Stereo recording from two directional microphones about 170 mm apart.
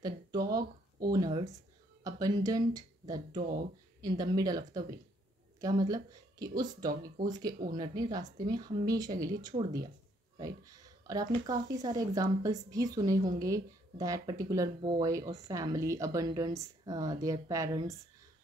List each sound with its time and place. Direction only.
0.0 s a sound: 20° right (ahead or behind)
2.0 s speech: 20° right (ahead or behind)
3.3 s speech: 60° right (ahead or behind)
4.0 s speech: 25° right (ahead or behind)
6.9 s speech: 55° right (ahead or behind)
7.7 s speech: 25° right (ahead or behind)